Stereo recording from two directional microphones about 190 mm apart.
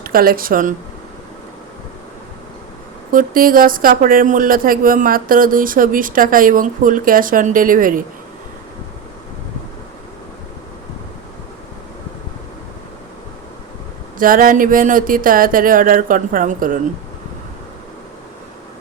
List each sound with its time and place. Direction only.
0.0 s speech: 50° right (ahead or behind)
3.1 s speech: 50° right (ahead or behind)
14.2 s speech: 45° right (ahead or behind)